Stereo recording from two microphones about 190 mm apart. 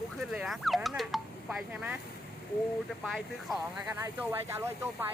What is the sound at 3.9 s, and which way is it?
Speech, 15° right (ahead or behind).